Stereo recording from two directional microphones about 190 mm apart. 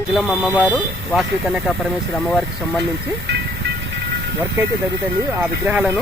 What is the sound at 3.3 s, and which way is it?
Train, 60° right (ahead or behind).